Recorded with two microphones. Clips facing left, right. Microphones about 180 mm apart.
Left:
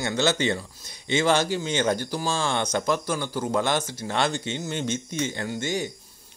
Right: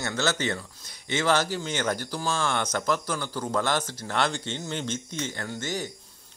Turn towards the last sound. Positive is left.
turn(degrees=10)  # may be behind; listen again after turning